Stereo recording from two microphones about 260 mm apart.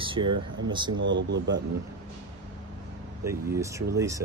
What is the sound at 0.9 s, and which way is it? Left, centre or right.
Speech, right.